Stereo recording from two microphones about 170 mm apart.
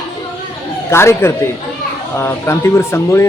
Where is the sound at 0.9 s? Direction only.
15° left (ahead or behind).